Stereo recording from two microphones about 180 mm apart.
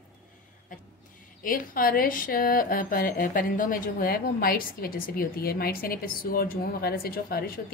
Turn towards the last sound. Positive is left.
turn(degrees=55)  # may be behind; listen again after turning